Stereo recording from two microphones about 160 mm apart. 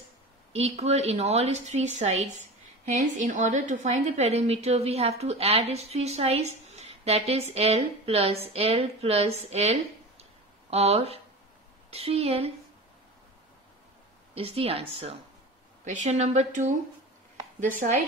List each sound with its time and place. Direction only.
0.5 s a woman's voice: 40° right (ahead or behind)
14.3 s a woman's voice: 40° right (ahead or behind)